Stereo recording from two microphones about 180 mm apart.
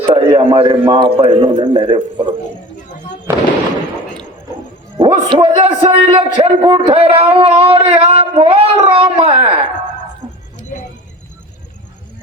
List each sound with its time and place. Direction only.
0.0 s a man's voice: 30° right (ahead or behind)
3.3 s speech: 15° right (ahead or behind)
5.4 s a man's voice: 30° right (ahead or behind)